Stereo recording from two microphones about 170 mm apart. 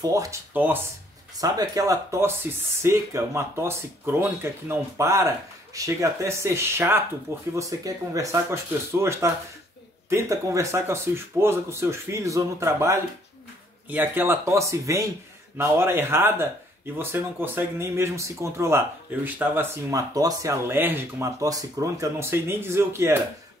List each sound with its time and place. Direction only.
0.0 s speech: 20° right (ahead or behind)